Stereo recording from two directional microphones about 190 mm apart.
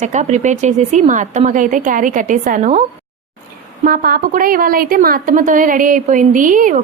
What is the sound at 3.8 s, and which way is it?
A woman's voice, 50° right (ahead or behind).